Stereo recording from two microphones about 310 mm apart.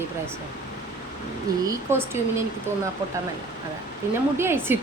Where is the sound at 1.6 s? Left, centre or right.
Centre.